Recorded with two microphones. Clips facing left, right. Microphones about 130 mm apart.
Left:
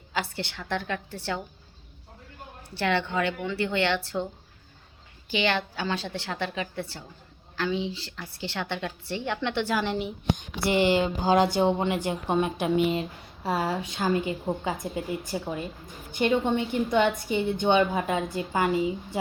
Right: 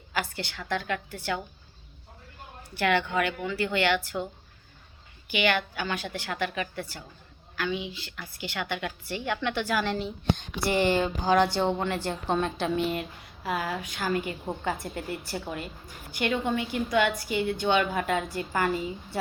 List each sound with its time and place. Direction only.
0.1 s a woman's voice: 25° left (ahead or behind)
2.6 s a woman's voice: 25° left (ahead or behind)
5.3 s a woman's voice: 30° left (ahead or behind)
13.0 s a woman's voice: 30° left (ahead or behind)